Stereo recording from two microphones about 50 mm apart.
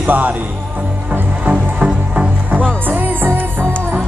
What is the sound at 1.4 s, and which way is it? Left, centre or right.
Music, right.